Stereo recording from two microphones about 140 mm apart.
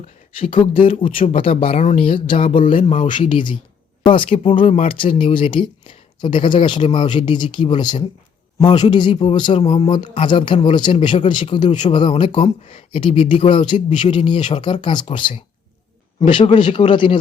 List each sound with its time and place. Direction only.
0.3 s speech: 40° left (ahead or behind)
2.2 s speech: 40° left (ahead or behind)
9.6 s speech: 45° left (ahead or behind)
9.9 s speech: 35° left (ahead or behind)